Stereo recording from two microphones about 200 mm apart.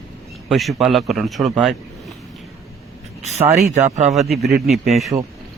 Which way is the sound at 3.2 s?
35° right (ahead or behind).